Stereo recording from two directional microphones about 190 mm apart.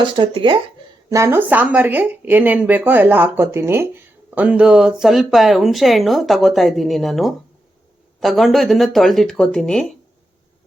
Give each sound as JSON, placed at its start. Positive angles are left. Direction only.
{"t": 0.0, "sound": "speech", "side_deg": -25}
{"t": 1.1, "sound": "speech", "side_deg": -15}